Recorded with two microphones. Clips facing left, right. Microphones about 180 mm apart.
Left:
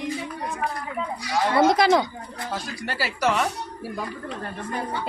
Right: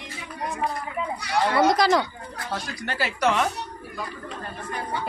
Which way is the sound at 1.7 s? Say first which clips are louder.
Left 2 dB; 20° left (ahead or behind).